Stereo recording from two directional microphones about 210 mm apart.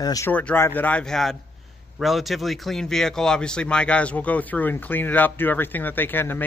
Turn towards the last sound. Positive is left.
turn(degrees=10)  # may be behind; listen again after turning